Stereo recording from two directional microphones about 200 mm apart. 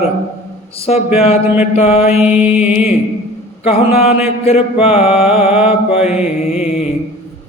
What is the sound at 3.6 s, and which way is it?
Mantra, 30° left (ahead or behind).